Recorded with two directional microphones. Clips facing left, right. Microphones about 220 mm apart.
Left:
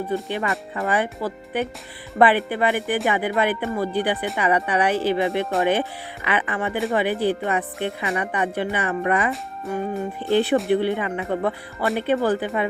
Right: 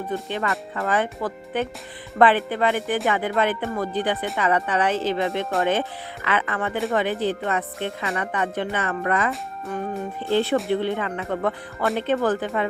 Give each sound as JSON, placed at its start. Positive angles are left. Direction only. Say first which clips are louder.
{"t": 0.1, "sound": "speech", "louder": "right 1 dB", "side_deg": 15}
{"t": 9.3, "sound": "speech", "louder": "left 2 dB", "side_deg": 0}
{"t": 10.2, "sound": "speech", "louder": "left 2 dB", "side_deg": 15}